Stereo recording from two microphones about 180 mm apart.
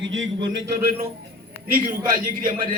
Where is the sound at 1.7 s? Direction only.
50° right (ahead or behind).